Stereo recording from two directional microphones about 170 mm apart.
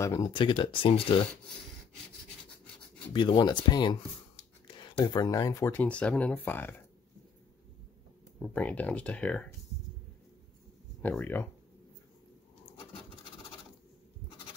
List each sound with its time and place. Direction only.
0.0 s speech: 25° left (ahead or behind)
3.1 s speech: 30° left (ahead or behind); by 6.7 s 10° left (ahead or behind)
8.4 s speech: 10° left (ahead or behind)
11.0 s speech: 10° left (ahead or behind)